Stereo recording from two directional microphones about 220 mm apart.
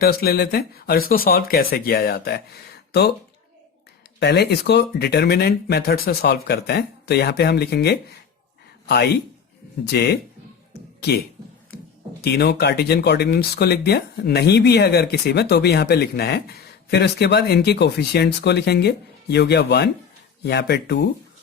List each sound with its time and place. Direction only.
0.0 s speech: 45° left (ahead or behind)
4.2 s speech: 50° left (ahead or behind)
9.9 s speech: 50° left (ahead or behind)
12.2 s speech: 50° left (ahead or behind)